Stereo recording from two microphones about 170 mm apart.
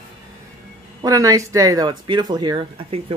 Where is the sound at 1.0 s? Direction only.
20° right (ahead or behind).